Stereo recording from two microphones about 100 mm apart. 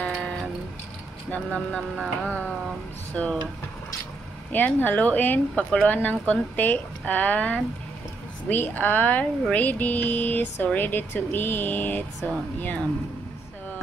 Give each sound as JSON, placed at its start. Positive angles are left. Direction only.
{"t": 0.0, "sound": "music", "side_deg": 5}
{"t": 1.3, "sound": "speech", "side_deg": 15}
{"t": 2.0, "sound": "music", "side_deg": -15}
{"t": 3.1, "sound": "speech", "side_deg": 5}
{"t": 4.5, "sound": "speech", "side_deg": 15}